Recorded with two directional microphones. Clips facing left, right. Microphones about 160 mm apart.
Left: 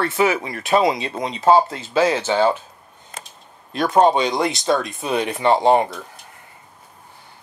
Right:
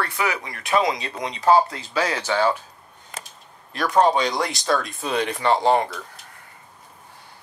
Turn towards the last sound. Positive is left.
turn(degrees=20)  # may be behind; listen again after turning